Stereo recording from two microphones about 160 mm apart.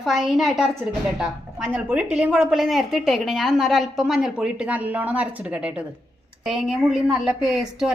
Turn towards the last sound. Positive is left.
turn(degrees=0)  # may be behind; listen again after turning